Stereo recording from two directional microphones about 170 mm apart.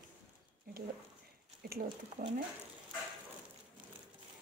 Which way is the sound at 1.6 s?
60° right (ahead or behind).